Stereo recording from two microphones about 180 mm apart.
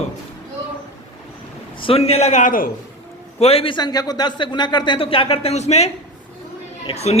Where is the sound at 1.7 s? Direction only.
30° left (ahead or behind); by 2.7 s 50° left (ahead or behind).